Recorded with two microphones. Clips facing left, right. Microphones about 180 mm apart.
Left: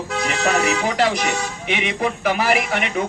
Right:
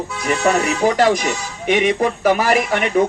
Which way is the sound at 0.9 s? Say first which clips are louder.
Right 4 dB; 45° right (ahead or behind).